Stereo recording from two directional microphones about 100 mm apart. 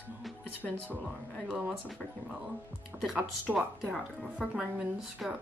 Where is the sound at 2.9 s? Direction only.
10° right (ahead or behind).